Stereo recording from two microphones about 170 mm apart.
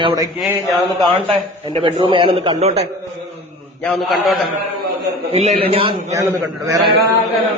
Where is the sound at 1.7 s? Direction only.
30° right (ahead or behind).